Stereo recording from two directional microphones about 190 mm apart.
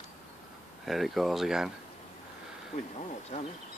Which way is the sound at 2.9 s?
35° left (ahead or behind).